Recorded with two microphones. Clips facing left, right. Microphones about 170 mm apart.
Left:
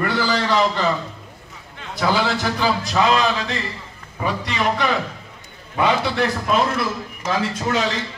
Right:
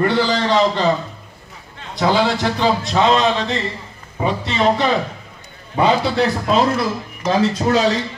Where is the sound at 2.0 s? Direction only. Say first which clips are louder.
Right 4 dB; 20° right (ahead or behind).